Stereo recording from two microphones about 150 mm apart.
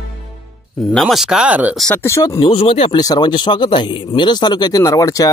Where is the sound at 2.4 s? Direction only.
40° left (ahead or behind).